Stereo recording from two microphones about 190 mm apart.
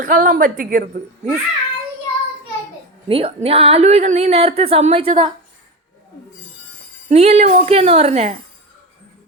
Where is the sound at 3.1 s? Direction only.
30° right (ahead or behind).